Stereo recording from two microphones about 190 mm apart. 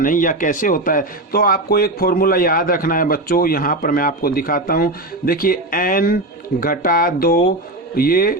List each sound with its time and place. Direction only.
0.0 s speech: 45° left (ahead or behind)